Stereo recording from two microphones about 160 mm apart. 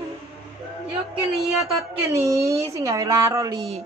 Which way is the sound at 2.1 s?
20° right (ahead or behind).